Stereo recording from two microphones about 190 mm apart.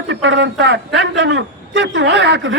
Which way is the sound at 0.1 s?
75° right (ahead or behind).